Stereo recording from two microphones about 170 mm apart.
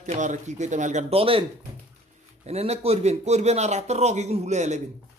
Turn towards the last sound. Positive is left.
turn(degrees=-40)  # may be behind; listen again after turning